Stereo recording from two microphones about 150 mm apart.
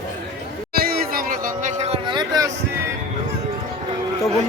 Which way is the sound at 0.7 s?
90° right.